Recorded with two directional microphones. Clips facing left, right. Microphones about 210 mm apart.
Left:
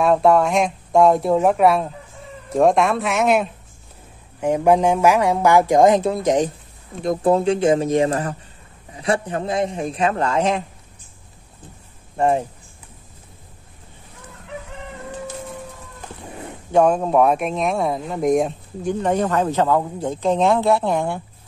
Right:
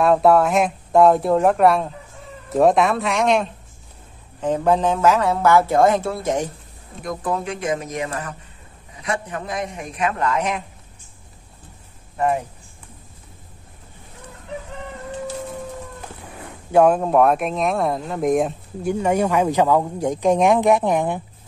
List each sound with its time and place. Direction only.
0.0 s a man's voice: centre (ahead or behind); by 10.6 s 30° left (ahead or behind)
12.2 s speech: 30° left (ahead or behind)
16.7 s speech: 5° right (ahead or behind)